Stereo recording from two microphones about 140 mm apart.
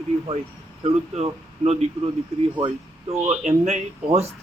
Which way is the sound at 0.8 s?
45° right (ahead or behind).